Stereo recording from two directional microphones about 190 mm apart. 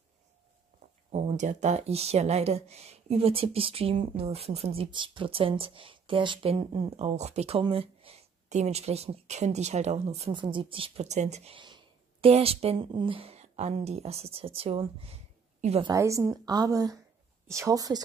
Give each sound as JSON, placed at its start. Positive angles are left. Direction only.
{"t": 1.2, "sound": "a woman's voice", "side_deg": -40}
{"t": 15.9, "sound": "a woman's voice", "side_deg": -15}